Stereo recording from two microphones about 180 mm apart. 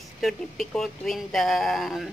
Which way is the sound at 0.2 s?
Centre (ahead or behind).